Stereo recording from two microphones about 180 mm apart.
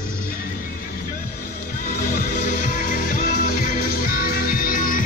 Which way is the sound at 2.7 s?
50° left (ahead or behind).